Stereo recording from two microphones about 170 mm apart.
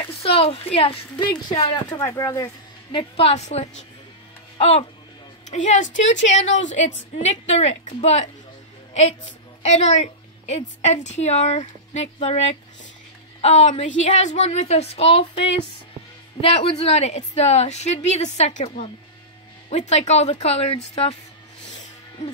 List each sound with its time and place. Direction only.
0.0 s a woman's voice: 35° left (ahead or behind)
1.9 s a woman's voice: 20° left (ahead or behind); by 6.1 s 45° left (ahead or behind)
6.3 s a woman's voice: 90° left
7.2 s a woman's voice: 40° left (ahead or behind)
9.6 s a woman's voice: 40° left (ahead or behind)